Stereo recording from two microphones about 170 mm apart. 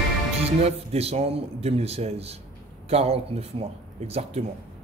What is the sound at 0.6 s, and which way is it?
A man's voice, 35° right (ahead or behind).